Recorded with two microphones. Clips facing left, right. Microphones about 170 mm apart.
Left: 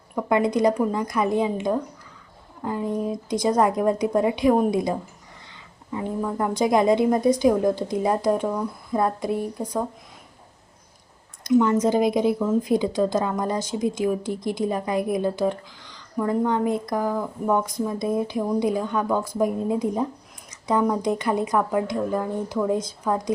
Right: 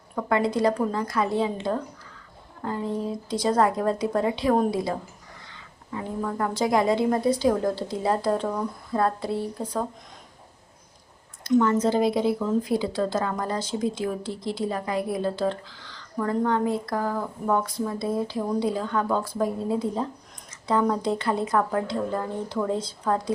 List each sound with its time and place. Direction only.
0.2 s a woman's voice: 20° left (ahead or behind)
11.6 s a woman's voice: 15° left (ahead or behind)